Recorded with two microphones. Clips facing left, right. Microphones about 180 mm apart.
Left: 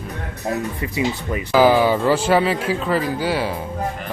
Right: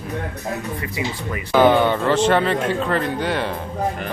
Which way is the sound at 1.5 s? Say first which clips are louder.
Even; 5° left (ahead or behind).